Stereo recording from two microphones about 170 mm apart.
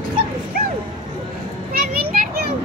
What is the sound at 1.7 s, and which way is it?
Children playing, 60° right (ahead or behind).